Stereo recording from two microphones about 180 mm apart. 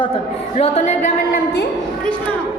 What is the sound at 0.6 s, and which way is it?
Speech, 40° left (ahead or behind).